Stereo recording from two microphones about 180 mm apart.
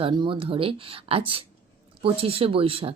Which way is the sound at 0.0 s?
25° right (ahead or behind).